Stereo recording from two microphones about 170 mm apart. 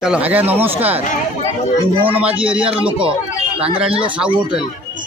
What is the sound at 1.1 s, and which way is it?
Speech, 45° left (ahead or behind).